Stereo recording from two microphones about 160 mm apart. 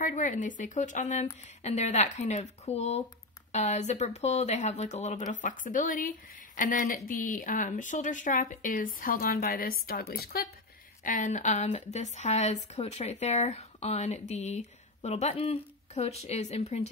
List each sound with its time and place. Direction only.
0.0 s speech: 55° left (ahead or behind); by 10.5 s 70° left (ahead or behind)
11.1 s speech: 55° left (ahead or behind)